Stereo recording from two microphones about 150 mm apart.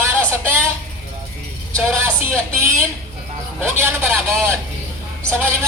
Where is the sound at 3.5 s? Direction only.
15° right (ahead or behind).